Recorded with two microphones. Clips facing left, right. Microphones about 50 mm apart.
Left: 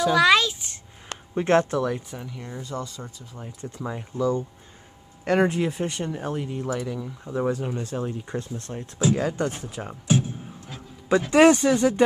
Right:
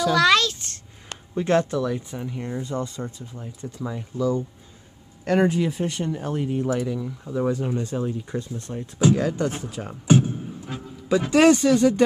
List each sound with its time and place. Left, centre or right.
0.0 s a sound: centre
1.3 s speech: left
1.9 s speech: centre
2.2 s speech: right
3.3 s speech: centre
6.3 s speech: centre
8.3 s speech: left
8.7 s speech: centre
11.2 s speech: centre